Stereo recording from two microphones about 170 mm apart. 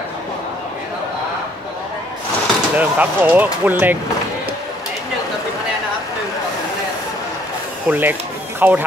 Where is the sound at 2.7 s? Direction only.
10° right (ahead or behind).